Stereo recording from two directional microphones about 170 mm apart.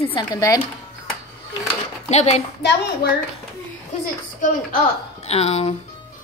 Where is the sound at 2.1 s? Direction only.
40° left (ahead or behind).